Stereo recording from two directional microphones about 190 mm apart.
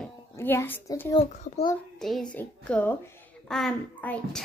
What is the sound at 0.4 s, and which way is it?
Speech, 10° left (ahead or behind).